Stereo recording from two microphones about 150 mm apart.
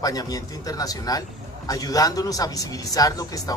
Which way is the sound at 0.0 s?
25° left (ahead or behind).